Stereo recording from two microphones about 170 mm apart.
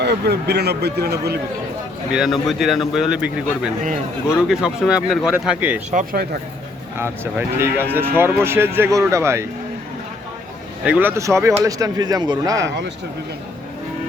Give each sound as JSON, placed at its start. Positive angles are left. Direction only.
{"t": 0.0, "sound": "speech", "side_deg": -75}
{"t": 2.1, "sound": "a man's voice", "side_deg": 0}
{"t": 5.9, "sound": "speech", "side_deg": -55}
{"t": 7.0, "sound": "speech", "side_deg": -15}
{"t": 10.8, "sound": "speech", "side_deg": -15}